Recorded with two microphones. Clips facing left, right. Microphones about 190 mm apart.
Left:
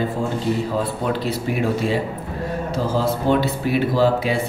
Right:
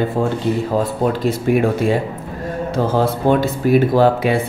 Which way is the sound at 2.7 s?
55° right (ahead or behind).